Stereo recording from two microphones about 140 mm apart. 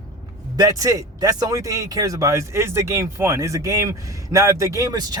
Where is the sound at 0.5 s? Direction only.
25° right (ahead or behind).